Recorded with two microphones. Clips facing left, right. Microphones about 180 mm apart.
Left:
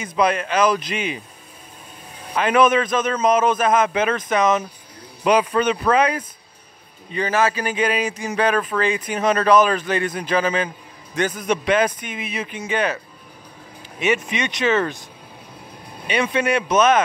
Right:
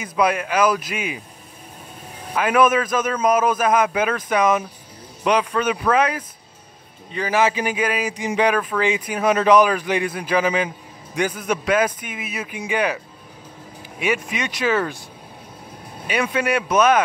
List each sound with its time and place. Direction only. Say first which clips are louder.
0.0 s a man's voice: even; 5° right (ahead or behind)
2.3 s a man's voice: left 1 dB; 5° right (ahead or behind)
5.2 s speech: left 2 dB; 5° left (ahead or behind)
7.3 s a man's voice: right 1 dB; 15° right (ahead or behind)
8.1 s a man's voice: right 1 dB; 15° right (ahead or behind)
16.1 s a man's voice: left 1 dB; 5° right (ahead or behind)